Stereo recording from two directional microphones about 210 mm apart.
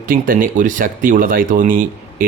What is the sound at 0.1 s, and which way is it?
Speech, 40° right (ahead or behind).